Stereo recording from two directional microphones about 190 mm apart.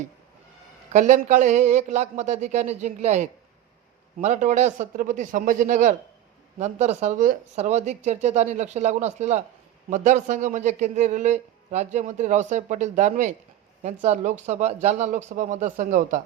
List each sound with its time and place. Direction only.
0.9 s a man's voice: 40° right (ahead or behind)